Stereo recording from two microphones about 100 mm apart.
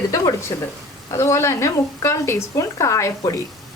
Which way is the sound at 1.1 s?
25° left (ahead or behind).